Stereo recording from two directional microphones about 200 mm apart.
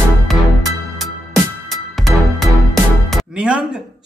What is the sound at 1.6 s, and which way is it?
Music, centre (ahead or behind).